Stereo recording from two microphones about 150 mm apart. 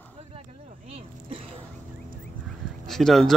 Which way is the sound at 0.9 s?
40° right (ahead or behind).